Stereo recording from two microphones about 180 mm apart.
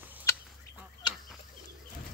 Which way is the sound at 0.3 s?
15° left (ahead or behind).